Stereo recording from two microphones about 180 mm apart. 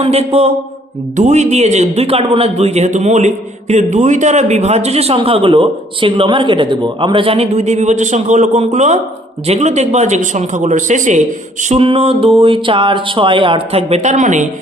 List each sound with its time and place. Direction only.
0.0 s a man's voice: 35° right (ahead or behind)
11.7 s a man's voice: 35° right (ahead or behind)